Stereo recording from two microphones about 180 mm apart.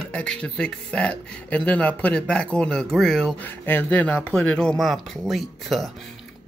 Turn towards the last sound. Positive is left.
turn(degrees=0)  # may be behind; listen again after turning